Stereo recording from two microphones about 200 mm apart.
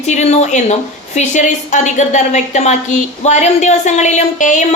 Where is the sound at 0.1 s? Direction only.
35° left (ahead or behind).